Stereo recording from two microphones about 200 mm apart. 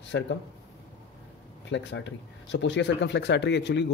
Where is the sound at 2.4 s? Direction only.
65° left (ahead or behind).